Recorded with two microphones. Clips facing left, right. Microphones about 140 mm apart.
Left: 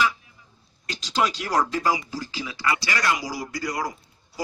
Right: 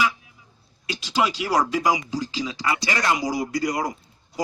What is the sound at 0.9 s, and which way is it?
A man's voice, 10° right (ahead or behind).